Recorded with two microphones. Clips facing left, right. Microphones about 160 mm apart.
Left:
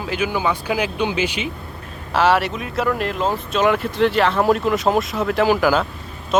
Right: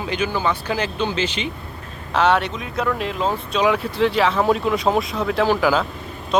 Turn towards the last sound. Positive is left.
turn(degrees=5)  # may be behind; listen again after turning